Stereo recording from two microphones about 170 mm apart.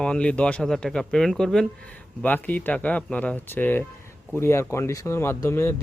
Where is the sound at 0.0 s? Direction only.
5° left (ahead or behind).